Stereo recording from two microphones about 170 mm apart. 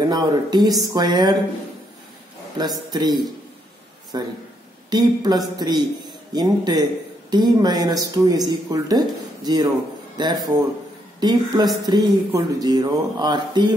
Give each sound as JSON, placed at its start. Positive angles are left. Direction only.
{"t": 0.1, "sound": "speech", "side_deg": -25}
{"t": 2.5, "sound": "speech", "side_deg": -25}